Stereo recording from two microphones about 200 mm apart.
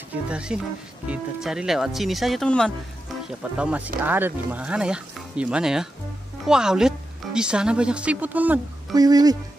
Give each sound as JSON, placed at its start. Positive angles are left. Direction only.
{"t": 0.1, "sound": "speech", "side_deg": -5}
{"t": 8.9, "sound": "speech", "side_deg": -20}